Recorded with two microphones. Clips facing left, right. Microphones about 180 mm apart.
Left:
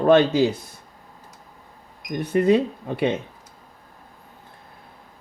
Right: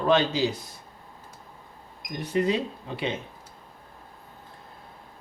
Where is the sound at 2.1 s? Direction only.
55° left (ahead or behind).